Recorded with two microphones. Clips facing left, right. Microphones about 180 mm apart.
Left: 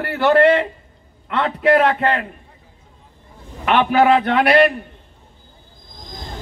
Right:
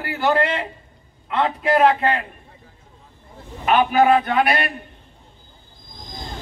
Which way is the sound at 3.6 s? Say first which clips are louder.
Left 1 dB; 70° left (ahead or behind).